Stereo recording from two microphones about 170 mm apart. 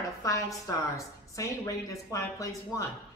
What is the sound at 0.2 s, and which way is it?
A woman's voice, 20° left (ahead or behind).